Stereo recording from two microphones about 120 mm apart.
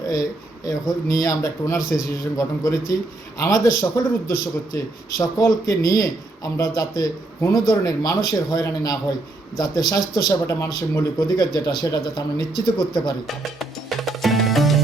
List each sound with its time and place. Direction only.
0.1 s speech: 30° left (ahead or behind)
13.2 s music: centre (ahead or behind)